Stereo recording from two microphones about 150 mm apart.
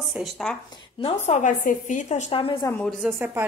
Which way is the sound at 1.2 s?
55° left (ahead or behind).